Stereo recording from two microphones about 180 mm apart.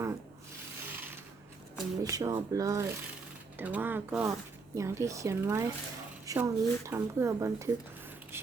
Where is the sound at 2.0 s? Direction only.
20° right (ahead or behind).